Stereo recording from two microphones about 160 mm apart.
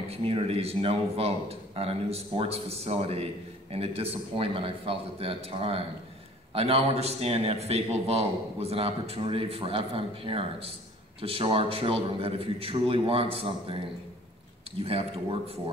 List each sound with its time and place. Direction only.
0.1 s a man's voice: 40° right (ahead or behind)
14.8 s a man's voice: 40° right (ahead or behind)